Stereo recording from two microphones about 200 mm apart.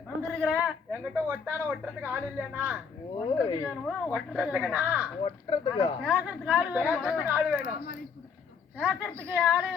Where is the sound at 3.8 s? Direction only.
Centre (ahead or behind).